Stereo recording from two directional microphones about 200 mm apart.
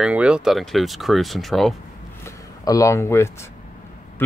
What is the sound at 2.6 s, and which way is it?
Speech, 15° left (ahead or behind).